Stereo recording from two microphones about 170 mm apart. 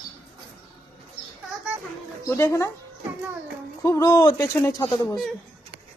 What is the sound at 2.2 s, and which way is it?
Speech, 15° left (ahead or behind).